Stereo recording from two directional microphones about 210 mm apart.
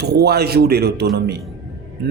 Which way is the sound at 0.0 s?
50° right (ahead or behind).